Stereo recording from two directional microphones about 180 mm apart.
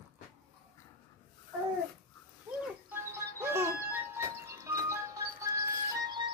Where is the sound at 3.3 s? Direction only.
15° right (ahead or behind).